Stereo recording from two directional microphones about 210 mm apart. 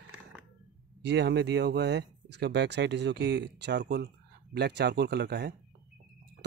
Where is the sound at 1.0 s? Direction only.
55° right (ahead or behind).